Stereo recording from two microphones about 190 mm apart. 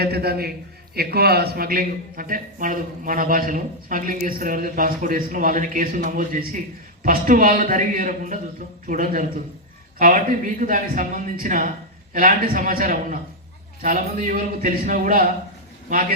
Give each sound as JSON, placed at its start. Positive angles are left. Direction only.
{"t": 0.0, "sound": "a man's voice", "side_deg": -55}